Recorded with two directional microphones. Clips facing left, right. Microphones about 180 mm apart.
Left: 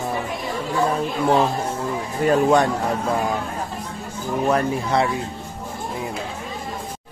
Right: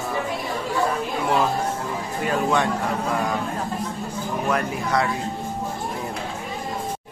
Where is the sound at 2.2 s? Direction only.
40° left (ahead or behind).